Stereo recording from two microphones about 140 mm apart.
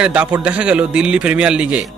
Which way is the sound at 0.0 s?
10° right (ahead or behind).